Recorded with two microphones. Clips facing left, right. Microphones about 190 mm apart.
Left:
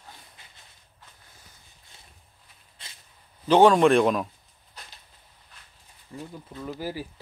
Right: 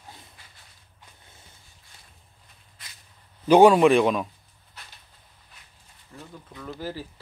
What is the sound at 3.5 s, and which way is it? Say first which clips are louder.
Speech: right 2 dB; 10° right (ahead or behind).